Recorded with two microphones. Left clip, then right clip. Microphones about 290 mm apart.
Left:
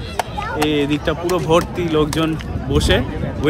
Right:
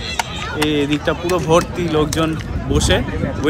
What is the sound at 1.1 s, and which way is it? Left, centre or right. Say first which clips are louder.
Speech: right 1 dB; centre.